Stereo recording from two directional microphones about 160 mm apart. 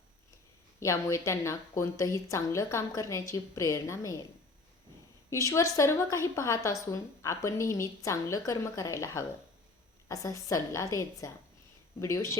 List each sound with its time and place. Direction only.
0.8 s a woman's voice: 20° left (ahead or behind)
5.3 s a woman's voice: 20° left (ahead or behind)